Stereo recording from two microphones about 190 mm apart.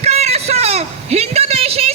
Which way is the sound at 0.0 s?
35° right (ahead or behind).